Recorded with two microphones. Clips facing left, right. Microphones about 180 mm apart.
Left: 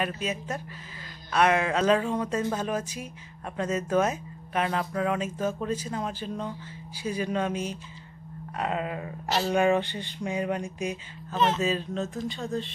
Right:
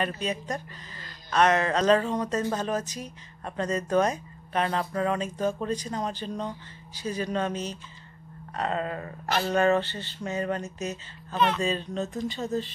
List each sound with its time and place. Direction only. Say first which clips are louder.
0.0 s speech: right 1 dB; 5° left (ahead or behind)
11.3 s speech: even; 40° left (ahead or behind)
11.6 s speech: left 1 dB; 5° left (ahead or behind)